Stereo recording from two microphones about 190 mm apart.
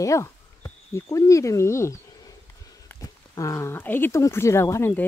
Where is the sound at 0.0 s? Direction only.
15° left (ahead or behind).